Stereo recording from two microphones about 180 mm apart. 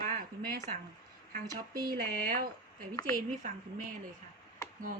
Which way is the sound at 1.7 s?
20° right (ahead or behind).